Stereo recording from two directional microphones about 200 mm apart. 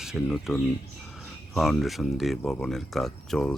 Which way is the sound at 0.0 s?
Centre (ahead or behind).